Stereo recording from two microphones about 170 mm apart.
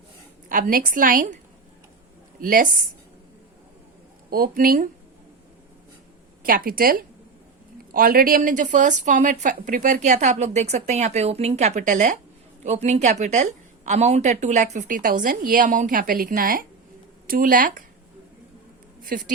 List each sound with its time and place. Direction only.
0.4 s a woman's voice: 55° right (ahead or behind)
2.4 s speech: 55° right (ahead or behind)
4.3 s speech: 60° right (ahead or behind)
6.4 s a woman's voice: 55° right (ahead or behind)
19.1 s speech: 60° right (ahead or behind)